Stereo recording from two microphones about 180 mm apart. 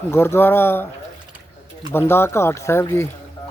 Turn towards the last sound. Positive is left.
turn(degrees=15)  # may be behind; listen again after turning